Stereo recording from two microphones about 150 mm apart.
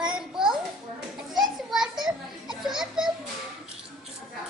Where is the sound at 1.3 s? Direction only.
Centre (ahead or behind).